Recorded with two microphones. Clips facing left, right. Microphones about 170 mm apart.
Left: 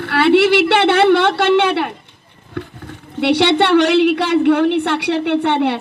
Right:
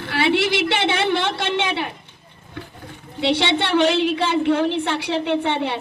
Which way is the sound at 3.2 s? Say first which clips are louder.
Left 6 dB; 65° left (ahead or behind).